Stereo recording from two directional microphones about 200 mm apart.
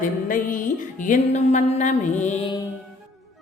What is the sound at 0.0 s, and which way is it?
A woman's voice, 40° left (ahead or behind).